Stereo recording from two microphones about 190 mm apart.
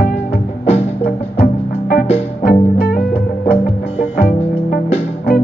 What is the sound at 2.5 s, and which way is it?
Music, 50° left (ahead or behind).